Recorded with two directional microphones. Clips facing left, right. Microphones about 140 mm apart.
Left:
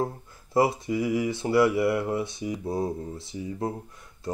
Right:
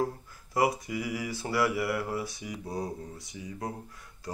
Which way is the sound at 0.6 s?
25° left (ahead or behind).